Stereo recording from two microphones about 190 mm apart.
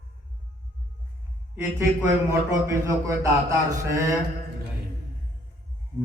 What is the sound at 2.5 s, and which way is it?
A man's voice, 15° right (ahead or behind).